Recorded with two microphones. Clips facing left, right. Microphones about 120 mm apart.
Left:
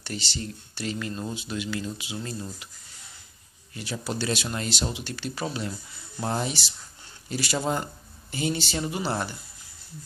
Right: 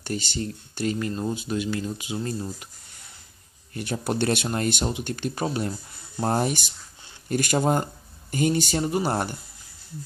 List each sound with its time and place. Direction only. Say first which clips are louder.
0.0 s speech: right 5 dB; 45° right (ahead or behind)
0.9 s speech: right 4 dB; 30° right (ahead or behind)
1.3 s speech: right 4 dB; 45° right (ahead or behind)
3.7 s speech: right 5 dB; 50° right (ahead or behind)